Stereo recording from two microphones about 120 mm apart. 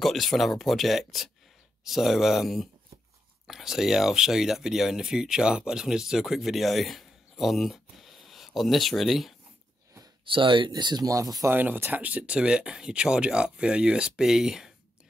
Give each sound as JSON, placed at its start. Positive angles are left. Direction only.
{"t": 0.0, "sound": "speech", "side_deg": 0}
{"t": 10.2, "sound": "speech", "side_deg": -45}
{"t": 11.5, "sound": "speech", "side_deg": -15}